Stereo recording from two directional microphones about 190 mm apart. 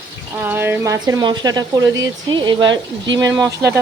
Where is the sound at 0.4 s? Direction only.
10° right (ahead or behind).